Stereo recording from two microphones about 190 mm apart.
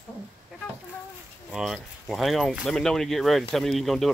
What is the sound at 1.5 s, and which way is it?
Speech, centre (ahead or behind).